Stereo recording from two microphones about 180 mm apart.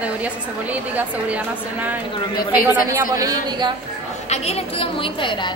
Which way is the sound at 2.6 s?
15° right (ahead or behind).